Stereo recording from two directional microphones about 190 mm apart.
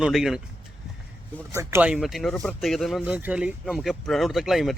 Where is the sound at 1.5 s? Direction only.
15° right (ahead or behind).